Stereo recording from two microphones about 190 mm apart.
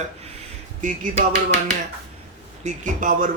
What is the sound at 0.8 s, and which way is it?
Music, 45° right (ahead or behind).